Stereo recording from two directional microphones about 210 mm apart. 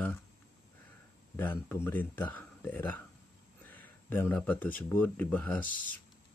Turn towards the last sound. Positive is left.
turn(degrees=40)  # may be behind; listen again after turning